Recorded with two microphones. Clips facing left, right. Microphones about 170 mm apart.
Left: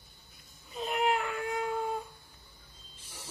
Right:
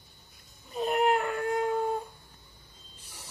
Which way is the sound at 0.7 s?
45° right (ahead or behind).